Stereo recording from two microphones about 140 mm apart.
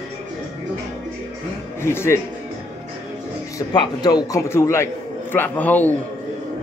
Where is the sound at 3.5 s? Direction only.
30° left (ahead or behind); by 5.9 s 10° left (ahead or behind).